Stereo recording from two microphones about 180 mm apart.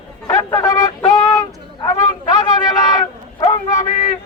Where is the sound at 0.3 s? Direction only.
15° left (ahead or behind).